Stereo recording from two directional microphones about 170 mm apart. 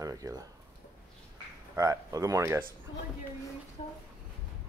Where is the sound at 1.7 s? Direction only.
20° right (ahead or behind).